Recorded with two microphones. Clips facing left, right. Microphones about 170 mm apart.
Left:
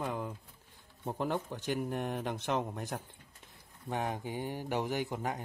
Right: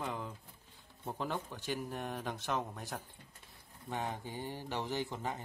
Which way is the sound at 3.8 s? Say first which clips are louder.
Left 4 dB; 15° left (ahead or behind).